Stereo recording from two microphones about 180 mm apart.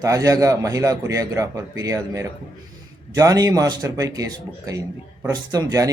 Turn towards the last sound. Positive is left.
turn(degrees=-20)  # may be behind; listen again after turning